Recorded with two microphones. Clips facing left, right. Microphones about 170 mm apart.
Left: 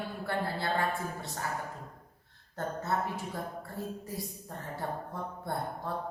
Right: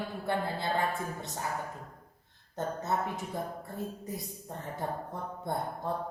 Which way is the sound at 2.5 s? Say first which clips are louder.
Right 1 dB; 20° right (ahead or behind).